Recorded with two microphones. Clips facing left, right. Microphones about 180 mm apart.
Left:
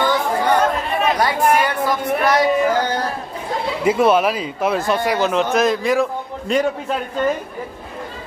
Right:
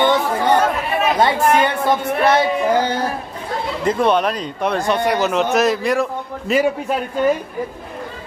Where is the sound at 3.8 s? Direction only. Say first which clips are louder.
Left 2 dB; 5° left (ahead or behind).